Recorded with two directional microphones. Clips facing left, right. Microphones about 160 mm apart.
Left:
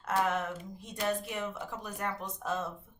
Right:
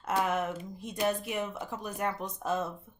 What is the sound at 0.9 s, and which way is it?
Speech, 15° right (ahead or behind).